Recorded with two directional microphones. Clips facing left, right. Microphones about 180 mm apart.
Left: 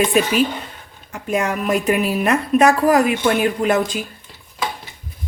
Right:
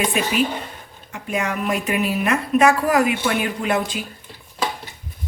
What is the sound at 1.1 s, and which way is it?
A woman's voice, 45° left (ahead or behind).